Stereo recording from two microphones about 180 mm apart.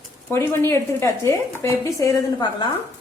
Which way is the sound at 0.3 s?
15° left (ahead or behind).